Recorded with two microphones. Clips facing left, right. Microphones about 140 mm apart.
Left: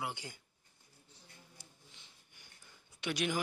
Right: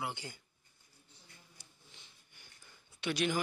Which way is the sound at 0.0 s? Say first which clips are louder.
Right 1 dB; 10° left (ahead or behind).